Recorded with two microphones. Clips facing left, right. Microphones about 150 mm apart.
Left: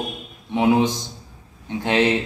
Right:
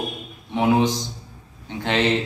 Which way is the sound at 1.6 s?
10° left (ahead or behind).